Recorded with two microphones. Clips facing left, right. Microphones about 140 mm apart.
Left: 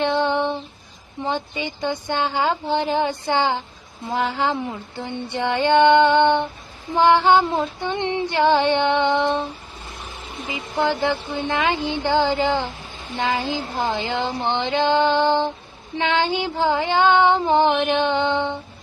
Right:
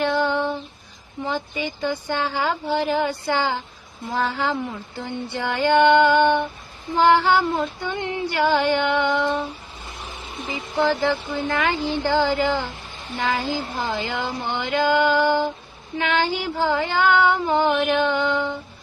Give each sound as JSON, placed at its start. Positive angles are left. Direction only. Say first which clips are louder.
{"t": 0.0, "sound": "female singing", "louder": "left 1 dB", "side_deg": 20}
{"t": 11.0, "sound": "female singing", "louder": "even", "side_deg": 20}